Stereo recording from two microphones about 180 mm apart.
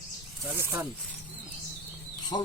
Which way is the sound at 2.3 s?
20° left (ahead or behind).